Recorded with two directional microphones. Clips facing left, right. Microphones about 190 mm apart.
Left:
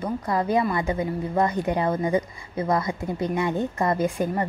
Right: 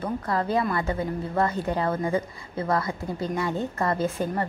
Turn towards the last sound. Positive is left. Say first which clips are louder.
# left 2 dB
turn(degrees=15)  # may be behind; listen again after turning